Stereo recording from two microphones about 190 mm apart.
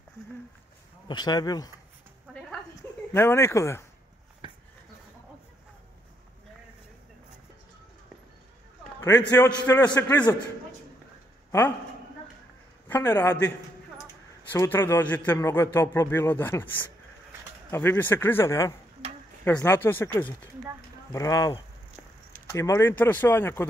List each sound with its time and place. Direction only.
1.0 s speech: 20° left (ahead or behind)
3.1 s a man's voice: 15° left (ahead or behind)
9.2 s a man's voice: 20° left (ahead or behind)
12.8 s a man's voice: 10° left (ahead or behind)
14.5 s a man's voice: 10° left (ahead or behind)